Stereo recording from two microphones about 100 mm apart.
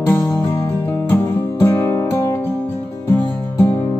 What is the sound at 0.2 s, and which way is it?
Music, 30° left (ahead or behind).